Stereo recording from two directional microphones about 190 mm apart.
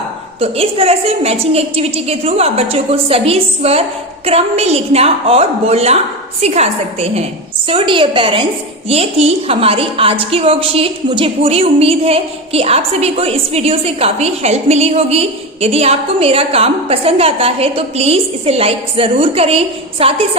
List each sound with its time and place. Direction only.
0.3 s a woman's voice: 30° right (ahead or behind)